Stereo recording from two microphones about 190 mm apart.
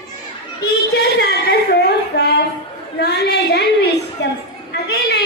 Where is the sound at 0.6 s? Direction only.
60° left (ahead or behind).